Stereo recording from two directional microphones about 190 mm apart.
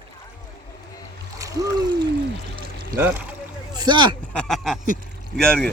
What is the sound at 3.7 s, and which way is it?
Boat, 20° right (ahead or behind).